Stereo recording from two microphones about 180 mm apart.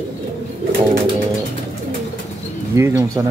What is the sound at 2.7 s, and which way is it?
Speech, 15° right (ahead or behind).